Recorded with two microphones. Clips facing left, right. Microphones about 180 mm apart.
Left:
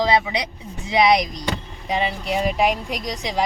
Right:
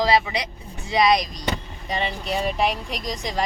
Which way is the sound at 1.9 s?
10° left (ahead or behind).